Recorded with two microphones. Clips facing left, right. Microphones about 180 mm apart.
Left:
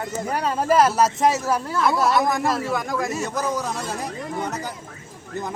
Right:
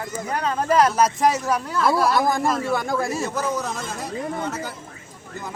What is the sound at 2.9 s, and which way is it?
Speech, 30° right (ahead or behind).